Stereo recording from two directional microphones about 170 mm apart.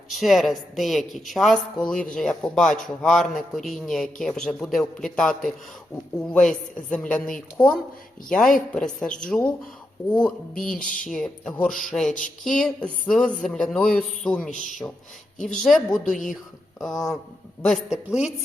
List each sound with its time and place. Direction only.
0.1 s a woman's voice: centre (ahead or behind)
14.5 s speech: 50° left (ahead or behind)
15.4 s a woman's voice: 5° left (ahead or behind)